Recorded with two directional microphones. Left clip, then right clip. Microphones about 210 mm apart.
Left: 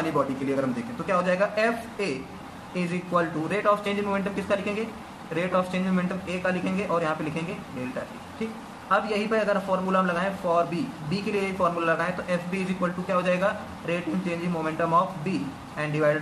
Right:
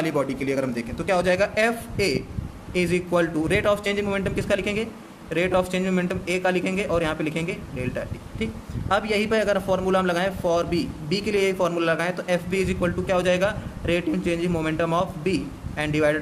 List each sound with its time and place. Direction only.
0.6 s a man's voice: 50° right (ahead or behind)
8.9 s a man's voice: 50° right (ahead or behind)